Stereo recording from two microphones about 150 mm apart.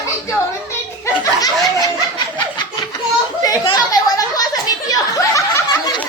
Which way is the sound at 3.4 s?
25° left (ahead or behind).